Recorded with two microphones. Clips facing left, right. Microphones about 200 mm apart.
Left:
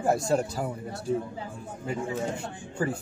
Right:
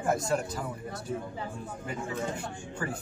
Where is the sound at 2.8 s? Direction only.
30° left (ahead or behind).